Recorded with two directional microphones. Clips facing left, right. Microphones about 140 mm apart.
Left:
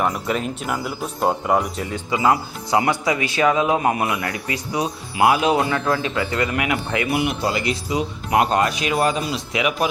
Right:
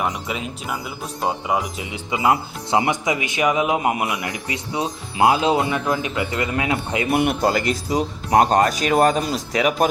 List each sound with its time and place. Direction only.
0.0 s speech: 5° right (ahead or behind)
2.0 s speech: 20° right (ahead or behind)
7.1 s speech: 50° right (ahead or behind)